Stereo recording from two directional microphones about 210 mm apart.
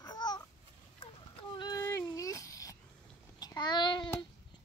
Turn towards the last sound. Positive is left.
turn(degrees=20)  # may be behind; listen again after turning